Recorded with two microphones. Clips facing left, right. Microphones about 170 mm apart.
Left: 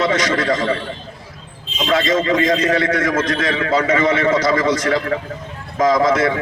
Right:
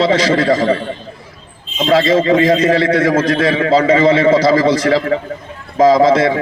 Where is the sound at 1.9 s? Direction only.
30° right (ahead or behind).